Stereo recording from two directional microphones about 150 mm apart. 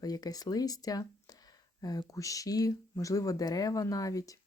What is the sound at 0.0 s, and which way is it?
Speech, 25° left (ahead or behind).